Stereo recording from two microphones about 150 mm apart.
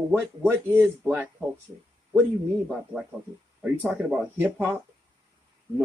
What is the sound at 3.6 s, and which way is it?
Speech, 5° right (ahead or behind).